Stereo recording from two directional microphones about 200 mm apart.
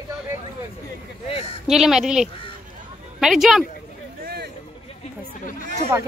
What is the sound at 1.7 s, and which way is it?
A woman's voice, centre (ahead or behind).